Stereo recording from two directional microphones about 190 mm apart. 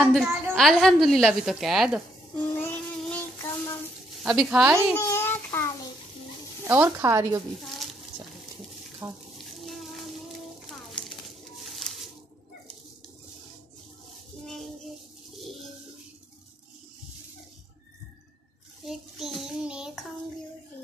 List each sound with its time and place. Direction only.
0.0 s a woman's voice: centre (ahead or behind)
2.5 s child singing: 10° left (ahead or behind)
4.2 s a woman's voice: 5° right (ahead or behind)
4.9 s a sound: 15° left (ahead or behind)
6.7 s speech: 10° right (ahead or behind)
9.0 s speech: 15° right (ahead or behind)
9.6 s a sound: centre (ahead or behind)
14.4 s child singing: centre (ahead or behind)
15.3 s bird: centre (ahead or behind)
18.9 s child singing: centre (ahead or behind)